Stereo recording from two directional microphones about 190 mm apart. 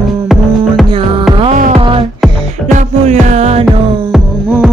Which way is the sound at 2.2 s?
Centre (ahead or behind).